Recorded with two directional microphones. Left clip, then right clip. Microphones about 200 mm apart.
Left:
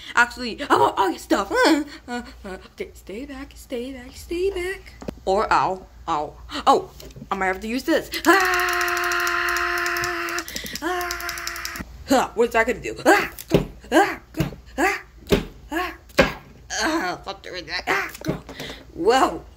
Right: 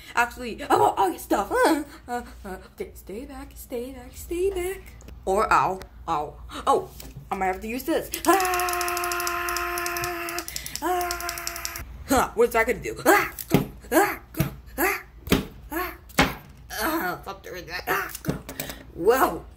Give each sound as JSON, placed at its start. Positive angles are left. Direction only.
{"t": 0.0, "sound": "speech", "side_deg": 10}
{"t": 7.2, "sound": "a sound", "side_deg": 15}
{"t": 10.6, "sound": "caw", "side_deg": 0}
{"t": 12.1, "sound": "speech", "side_deg": 10}
{"t": 16.6, "sound": "wail", "side_deg": 10}
{"t": 19.0, "sound": "speech", "side_deg": 10}